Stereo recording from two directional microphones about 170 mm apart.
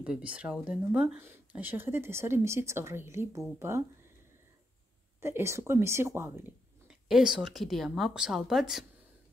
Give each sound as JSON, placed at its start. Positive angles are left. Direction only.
{"t": 0.0, "sound": "speech", "side_deg": -5}
{"t": 5.2, "sound": "speech", "side_deg": -15}
{"t": 6.9, "sound": "speech", "side_deg": -5}